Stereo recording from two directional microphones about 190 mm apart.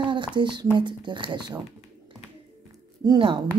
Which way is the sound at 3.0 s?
25° right (ahead or behind).